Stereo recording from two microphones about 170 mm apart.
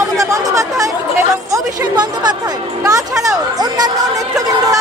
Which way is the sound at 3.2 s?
25° right (ahead or behind).